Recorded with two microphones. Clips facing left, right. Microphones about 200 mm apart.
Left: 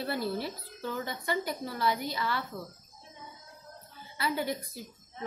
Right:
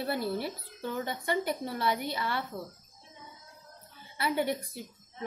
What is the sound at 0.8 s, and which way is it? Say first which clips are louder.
Speech: right 1 dB; 25° right (ahead or behind).